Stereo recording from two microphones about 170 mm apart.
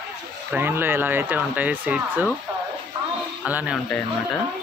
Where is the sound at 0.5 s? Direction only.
10° right (ahead or behind).